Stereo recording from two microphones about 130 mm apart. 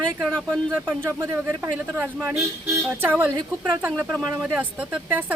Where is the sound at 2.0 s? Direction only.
10° right (ahead or behind).